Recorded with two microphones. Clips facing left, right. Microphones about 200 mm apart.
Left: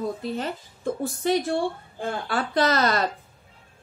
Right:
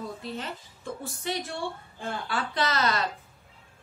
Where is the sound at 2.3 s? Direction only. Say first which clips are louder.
Left 7 dB; 45° left (ahead or behind).